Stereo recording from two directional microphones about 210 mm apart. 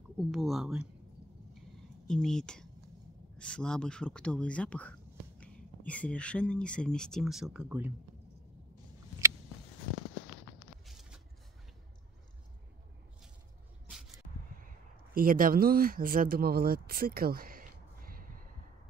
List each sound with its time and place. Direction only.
0.3 s speech: centre (ahead or behind)
2.0 s speech: 5° left (ahead or behind)
10.9 s vehicle: centre (ahead or behind)
13.8 s a sound: centre (ahead or behind)
15.1 s speech: 40° right (ahead or behind)